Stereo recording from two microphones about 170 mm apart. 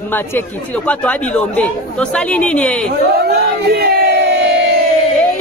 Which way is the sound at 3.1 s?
70° right (ahead or behind).